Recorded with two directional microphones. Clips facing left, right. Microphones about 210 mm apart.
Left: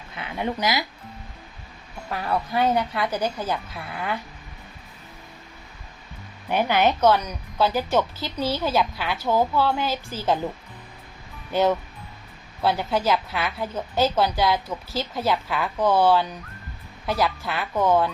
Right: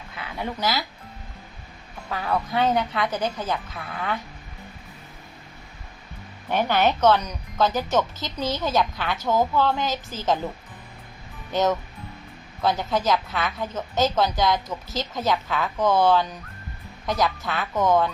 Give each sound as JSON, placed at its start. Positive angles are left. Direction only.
{"t": 0.2, "sound": "speech", "side_deg": 20}
{"t": 2.0, "sound": "a woman's voice", "side_deg": 10}
{"t": 6.5, "sound": "a woman's voice", "side_deg": 10}
{"t": 11.5, "sound": "a woman's voice", "side_deg": 10}